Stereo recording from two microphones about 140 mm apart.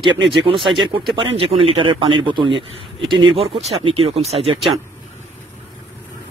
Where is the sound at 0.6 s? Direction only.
Centre (ahead or behind).